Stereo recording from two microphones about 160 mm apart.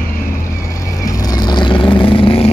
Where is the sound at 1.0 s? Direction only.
20° left (ahead or behind).